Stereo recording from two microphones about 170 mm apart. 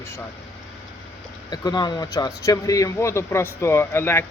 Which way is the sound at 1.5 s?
25° left (ahead or behind).